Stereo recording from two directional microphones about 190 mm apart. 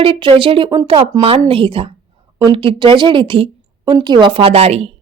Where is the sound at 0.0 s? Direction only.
30° right (ahead or behind).